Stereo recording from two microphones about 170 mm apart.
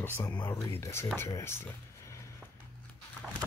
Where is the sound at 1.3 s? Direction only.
15° left (ahead or behind).